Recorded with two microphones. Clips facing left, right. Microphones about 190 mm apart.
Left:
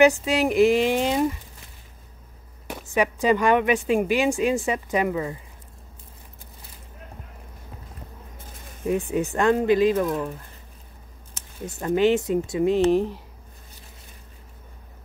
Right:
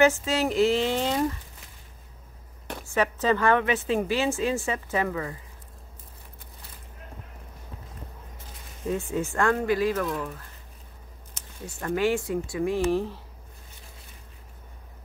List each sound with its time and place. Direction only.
0.0 s a woman's voice: 15° left (ahead or behind)
2.9 s a woman's voice: 15° left (ahead or behind)
8.8 s speech: 15° left (ahead or behind)
11.6 s speech: 20° left (ahead or behind)